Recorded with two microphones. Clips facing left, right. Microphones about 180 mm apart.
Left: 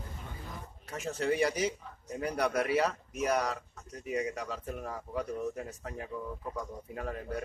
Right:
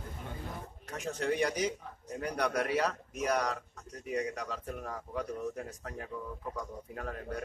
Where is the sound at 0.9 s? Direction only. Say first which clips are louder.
Left 2 dB; 5° left (ahead or behind).